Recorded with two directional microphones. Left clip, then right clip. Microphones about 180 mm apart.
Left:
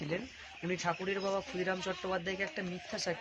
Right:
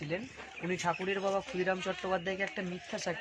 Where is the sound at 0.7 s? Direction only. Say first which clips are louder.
Right 2 dB; 40° right (ahead or behind).